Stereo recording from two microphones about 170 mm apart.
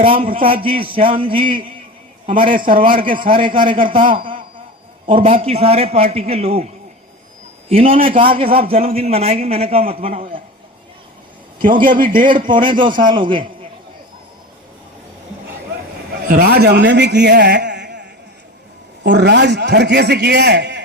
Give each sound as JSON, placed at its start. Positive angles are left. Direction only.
{"t": 0.0, "sound": "a man's voice", "side_deg": -30}
{"t": 7.7, "sound": "a man's voice", "side_deg": -35}
{"t": 11.8, "sound": "a man's voice", "side_deg": -55}
{"t": 12.2, "sound": "a man's voice", "side_deg": -30}
{"t": 16.3, "sound": "a man's voice", "side_deg": -65}